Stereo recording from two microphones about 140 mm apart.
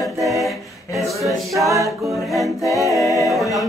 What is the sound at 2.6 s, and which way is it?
A capella, 25° left (ahead or behind).